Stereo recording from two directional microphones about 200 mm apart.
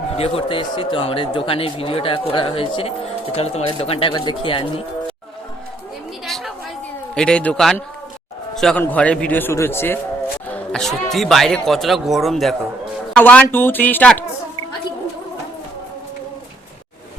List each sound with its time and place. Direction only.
0.2 s speech: 30° left (ahead or behind)
6.2 s chatter: centre (ahead or behind)
7.2 s a man's voice: 5° left (ahead or behind)